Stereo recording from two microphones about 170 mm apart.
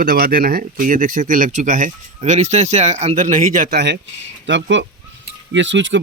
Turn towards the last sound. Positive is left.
turn(degrees=-90)